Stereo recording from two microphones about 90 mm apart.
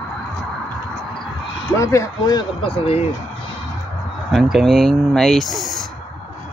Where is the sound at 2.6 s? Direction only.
90° left.